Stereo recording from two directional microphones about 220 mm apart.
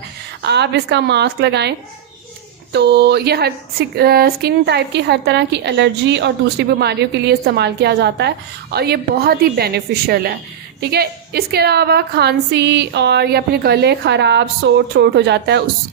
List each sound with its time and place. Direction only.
0.4 s speech: 50° right (ahead or behind)
2.7 s speech: 50° right (ahead or behind)